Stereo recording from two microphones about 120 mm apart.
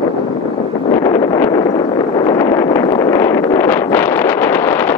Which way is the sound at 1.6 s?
70° left (ahead or behind).